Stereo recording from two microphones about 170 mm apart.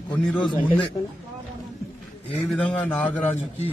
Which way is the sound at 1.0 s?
35° left (ahead or behind).